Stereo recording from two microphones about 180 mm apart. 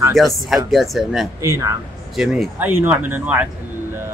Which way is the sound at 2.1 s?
Centre (ahead or behind).